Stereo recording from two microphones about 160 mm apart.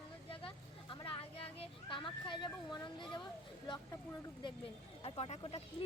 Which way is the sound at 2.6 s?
30° left (ahead or behind).